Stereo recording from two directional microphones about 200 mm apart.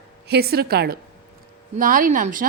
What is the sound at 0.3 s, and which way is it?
A woman's voice, 55° right (ahead or behind).